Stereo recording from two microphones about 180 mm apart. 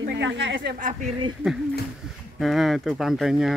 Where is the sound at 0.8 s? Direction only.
45° right (ahead or behind).